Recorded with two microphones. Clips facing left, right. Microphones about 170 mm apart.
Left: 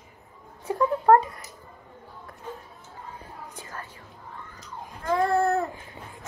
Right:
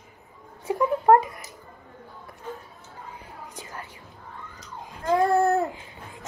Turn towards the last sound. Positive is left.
turn(degrees=-25)  # may be behind; listen again after turning